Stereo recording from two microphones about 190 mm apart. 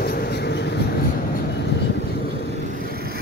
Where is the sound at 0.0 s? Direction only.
55° left (ahead or behind).